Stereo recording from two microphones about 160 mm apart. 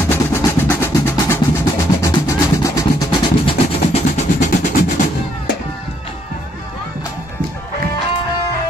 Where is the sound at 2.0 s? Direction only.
20° left (ahead or behind).